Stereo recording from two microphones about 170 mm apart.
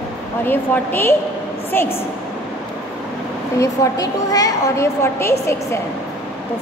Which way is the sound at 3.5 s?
20° left (ahead or behind).